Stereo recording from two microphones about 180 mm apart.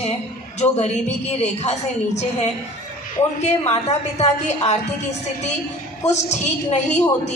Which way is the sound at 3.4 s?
35° left (ahead or behind).